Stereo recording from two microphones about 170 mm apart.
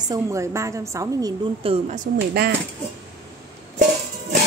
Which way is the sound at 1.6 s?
35° right (ahead or behind).